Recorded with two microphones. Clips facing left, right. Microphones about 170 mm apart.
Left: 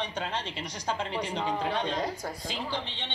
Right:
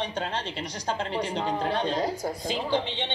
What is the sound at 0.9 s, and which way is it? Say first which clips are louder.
A woman's voice: right 2 dB; 35° right (ahead or behind).